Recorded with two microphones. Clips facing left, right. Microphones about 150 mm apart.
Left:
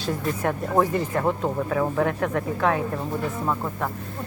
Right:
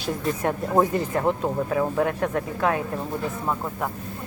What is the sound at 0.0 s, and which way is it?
Speech, 15° right (ahead or behind).